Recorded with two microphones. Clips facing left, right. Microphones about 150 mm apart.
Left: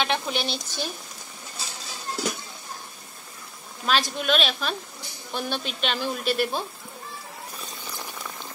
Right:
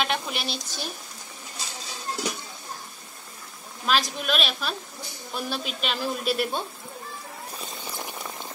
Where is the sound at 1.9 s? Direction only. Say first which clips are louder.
Left 1 dB; centre (ahead or behind).